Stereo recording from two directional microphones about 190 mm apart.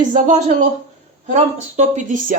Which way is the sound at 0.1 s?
40° right (ahead or behind).